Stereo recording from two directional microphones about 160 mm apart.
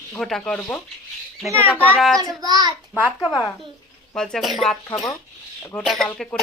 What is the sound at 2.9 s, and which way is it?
Speech, 10° right (ahead or behind).